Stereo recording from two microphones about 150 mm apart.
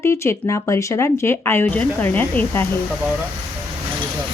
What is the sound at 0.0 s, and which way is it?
Speech, 15° left (ahead or behind).